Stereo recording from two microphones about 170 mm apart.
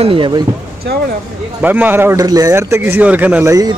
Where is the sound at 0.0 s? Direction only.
30° right (ahead or behind).